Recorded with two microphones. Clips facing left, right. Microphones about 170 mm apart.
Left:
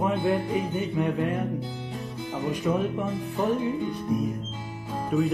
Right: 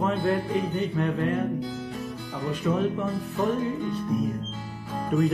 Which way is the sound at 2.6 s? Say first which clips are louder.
Right 2 dB; 15° left (ahead or behind).